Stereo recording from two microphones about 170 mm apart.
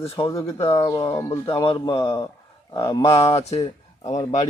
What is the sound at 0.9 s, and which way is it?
Speech, 20° left (ahead or behind).